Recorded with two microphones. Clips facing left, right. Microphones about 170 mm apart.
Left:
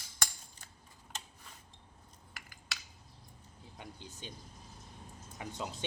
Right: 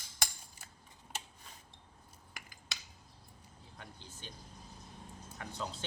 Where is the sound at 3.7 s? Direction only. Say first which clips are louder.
Left 4 dB; 15° left (ahead or behind).